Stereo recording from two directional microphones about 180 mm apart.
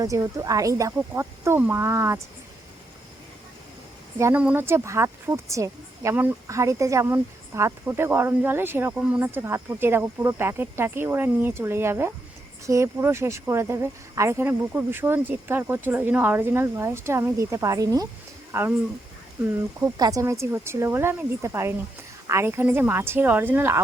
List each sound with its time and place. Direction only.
0.0 s speech: 15° right (ahead or behind)
4.2 s speech: 10° right (ahead or behind)
19.8 s speech: 20° right (ahead or behind)